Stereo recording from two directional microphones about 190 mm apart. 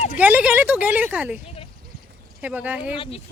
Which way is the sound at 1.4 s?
30° left (ahead or behind).